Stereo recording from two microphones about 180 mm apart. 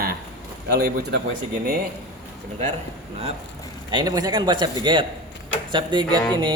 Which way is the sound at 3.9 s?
20° right (ahead or behind).